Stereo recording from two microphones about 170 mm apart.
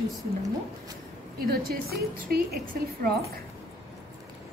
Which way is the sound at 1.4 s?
60° right (ahead or behind).